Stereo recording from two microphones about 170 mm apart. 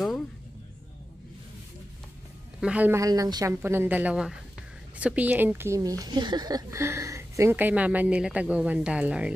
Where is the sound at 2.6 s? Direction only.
10° right (ahead or behind).